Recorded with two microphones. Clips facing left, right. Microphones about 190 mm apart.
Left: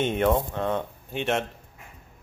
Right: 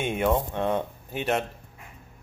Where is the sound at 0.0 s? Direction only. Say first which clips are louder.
Left 2 dB; 5° right (ahead or behind).